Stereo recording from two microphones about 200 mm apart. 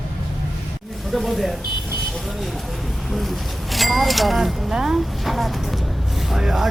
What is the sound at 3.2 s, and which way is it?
Bird, centre (ahead or behind).